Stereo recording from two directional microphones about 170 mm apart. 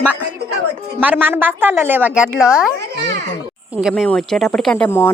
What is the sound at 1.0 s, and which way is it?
A woman's voice, 10° right (ahead or behind).